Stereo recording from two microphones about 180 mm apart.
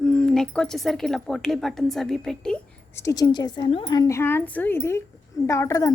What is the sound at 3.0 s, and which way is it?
A woman's voice, 20° left (ahead or behind).